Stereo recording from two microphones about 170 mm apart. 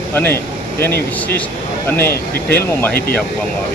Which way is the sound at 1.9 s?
10° left (ahead or behind).